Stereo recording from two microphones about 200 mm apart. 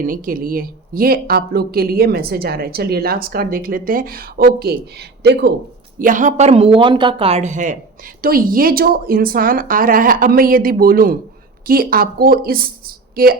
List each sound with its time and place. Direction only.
0.0 s speech: 45° right (ahead or behind)
6.0 s speech: 40° right (ahead or behind)